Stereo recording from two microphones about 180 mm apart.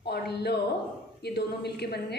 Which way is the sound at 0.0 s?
65° left (ahead or behind).